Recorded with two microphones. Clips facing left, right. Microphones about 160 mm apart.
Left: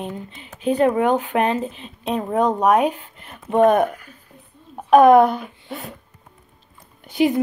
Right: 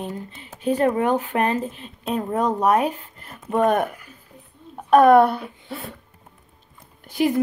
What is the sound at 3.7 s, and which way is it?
Speech, 45° left (ahead or behind).